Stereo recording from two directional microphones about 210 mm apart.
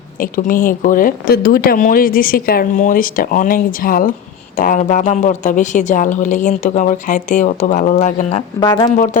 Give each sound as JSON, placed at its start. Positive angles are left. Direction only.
{"t": 0.2, "sound": "speech", "side_deg": 40}
{"t": 8.6, "sound": "speech", "side_deg": 20}